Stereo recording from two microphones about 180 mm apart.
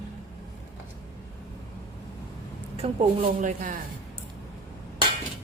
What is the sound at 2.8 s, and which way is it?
A woman's voice, 40° right (ahead or behind).